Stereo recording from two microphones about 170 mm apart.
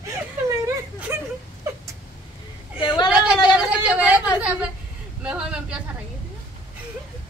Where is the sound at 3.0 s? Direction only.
5° right (ahead or behind).